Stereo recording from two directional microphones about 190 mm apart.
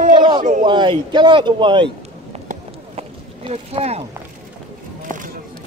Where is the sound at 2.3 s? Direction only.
35° right (ahead or behind).